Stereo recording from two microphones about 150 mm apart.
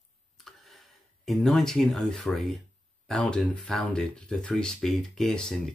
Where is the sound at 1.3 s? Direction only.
Centre (ahead or behind).